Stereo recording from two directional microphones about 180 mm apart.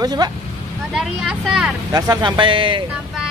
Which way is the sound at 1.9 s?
20° right (ahead or behind).